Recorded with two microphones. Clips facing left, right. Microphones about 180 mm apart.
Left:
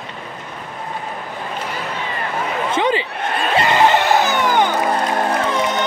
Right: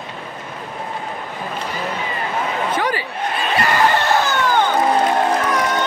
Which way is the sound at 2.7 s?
20° left (ahead or behind).